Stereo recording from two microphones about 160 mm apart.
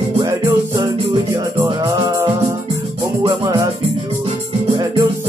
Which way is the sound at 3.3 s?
20° right (ahead or behind).